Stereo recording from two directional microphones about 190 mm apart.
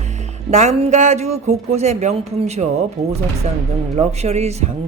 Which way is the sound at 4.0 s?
35° right (ahead or behind).